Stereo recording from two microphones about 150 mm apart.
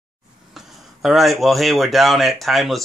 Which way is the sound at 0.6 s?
Centre (ahead or behind).